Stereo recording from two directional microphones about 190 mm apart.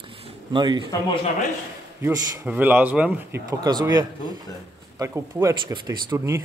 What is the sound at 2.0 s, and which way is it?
Speech, 15° right (ahead or behind).